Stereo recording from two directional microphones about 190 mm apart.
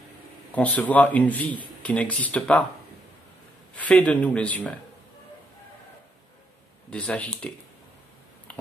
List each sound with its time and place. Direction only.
0.5 s a man's voice: 10° left (ahead or behind)
3.7 s a man's voice: 5° left (ahead or behind)
6.9 s a man's voice: 5° left (ahead or behind)